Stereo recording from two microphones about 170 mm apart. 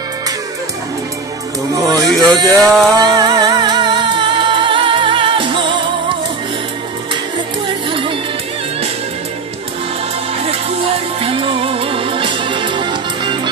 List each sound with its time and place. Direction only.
1.8 s a sound: 20° right (ahead or behind)
2.5 s music: centre (ahead or behind)
3.0 s music: 25° right (ahead or behind)
7.6 s music: 30° right (ahead or behind)
11.1 s music: 35° right (ahead or behind)